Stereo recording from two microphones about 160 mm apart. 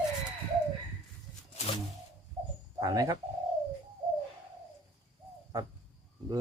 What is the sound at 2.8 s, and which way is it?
Speech, 20° right (ahead or behind).